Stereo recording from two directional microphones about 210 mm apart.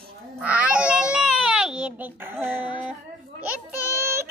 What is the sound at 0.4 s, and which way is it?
Babbling, 5° right (ahead or behind).